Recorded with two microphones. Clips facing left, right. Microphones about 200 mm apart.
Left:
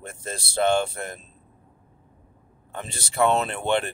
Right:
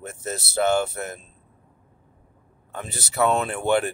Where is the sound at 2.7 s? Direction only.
5° right (ahead or behind).